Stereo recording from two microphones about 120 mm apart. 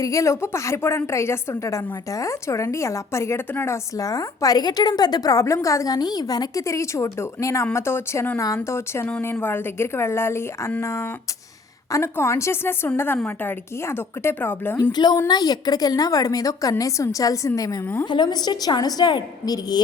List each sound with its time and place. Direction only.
0.0 s a woman's voice: 25° left (ahead or behind)
3.9 s a woman's voice: 30° left (ahead or behind)
14.9 s a woman's voice: 35° left (ahead or behind)